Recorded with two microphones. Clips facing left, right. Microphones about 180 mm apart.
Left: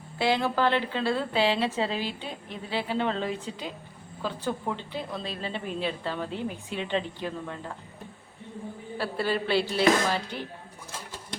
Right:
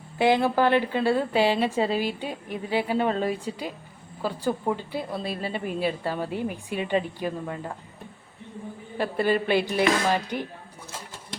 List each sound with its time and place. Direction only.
0.2 s a woman's voice: 15° right (ahead or behind)
9.0 s a woman's voice: 15° right (ahead or behind)